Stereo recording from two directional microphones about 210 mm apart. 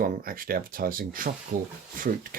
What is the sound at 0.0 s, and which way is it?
Speech, 45° right (ahead or behind).